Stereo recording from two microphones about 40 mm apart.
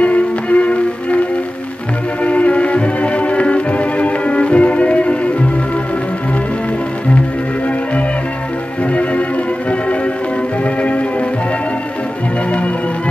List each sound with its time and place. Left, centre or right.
0.0 s music: left
2.2 s music: left
10.6 s music: left